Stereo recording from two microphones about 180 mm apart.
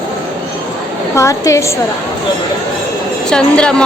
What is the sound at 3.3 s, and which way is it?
Speech, 5° left (ahead or behind).